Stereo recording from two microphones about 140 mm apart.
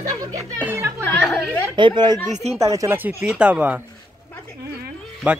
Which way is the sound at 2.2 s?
55° right (ahead or behind).